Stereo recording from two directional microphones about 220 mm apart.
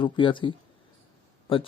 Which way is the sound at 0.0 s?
20° left (ahead or behind).